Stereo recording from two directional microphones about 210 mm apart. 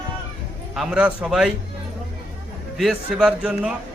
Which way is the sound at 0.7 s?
5° right (ahead or behind).